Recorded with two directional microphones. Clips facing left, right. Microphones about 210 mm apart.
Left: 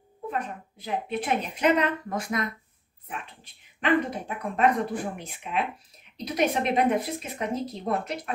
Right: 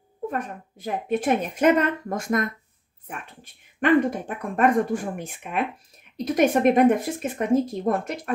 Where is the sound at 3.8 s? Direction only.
50° right (ahead or behind).